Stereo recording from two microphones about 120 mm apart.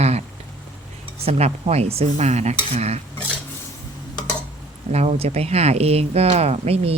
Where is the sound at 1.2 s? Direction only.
60° right (ahead or behind).